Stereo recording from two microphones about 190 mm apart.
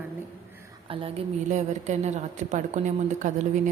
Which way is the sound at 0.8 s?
30° right (ahead or behind).